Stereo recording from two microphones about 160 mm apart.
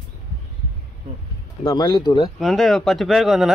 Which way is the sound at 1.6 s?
25° left (ahead or behind).